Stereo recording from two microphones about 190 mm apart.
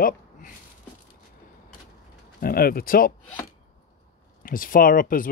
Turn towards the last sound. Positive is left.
turn(degrees=45)  # may be behind; listen again after turning